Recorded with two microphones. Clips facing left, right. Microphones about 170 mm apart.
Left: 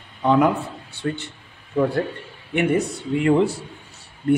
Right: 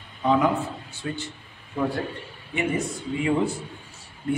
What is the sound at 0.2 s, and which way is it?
Speech, 65° left (ahead or behind).